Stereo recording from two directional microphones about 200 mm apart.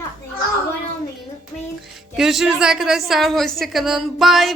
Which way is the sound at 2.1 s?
Centre (ahead or behind).